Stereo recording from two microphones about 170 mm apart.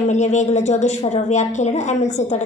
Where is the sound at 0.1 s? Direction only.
45° left (ahead or behind).